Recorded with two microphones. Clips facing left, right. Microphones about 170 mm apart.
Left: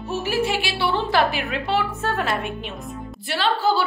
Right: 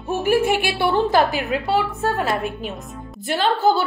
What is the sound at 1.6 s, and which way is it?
Speech, 10° right (ahead or behind).